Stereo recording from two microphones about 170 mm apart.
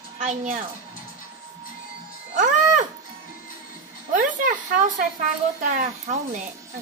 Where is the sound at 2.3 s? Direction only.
45° right (ahead or behind).